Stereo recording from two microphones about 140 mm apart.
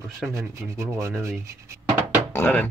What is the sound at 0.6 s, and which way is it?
Rub, 20° right (ahead or behind).